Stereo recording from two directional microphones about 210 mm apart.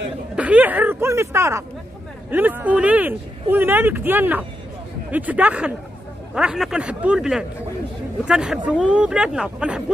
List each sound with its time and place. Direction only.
0.4 s speech: 5° right (ahead or behind)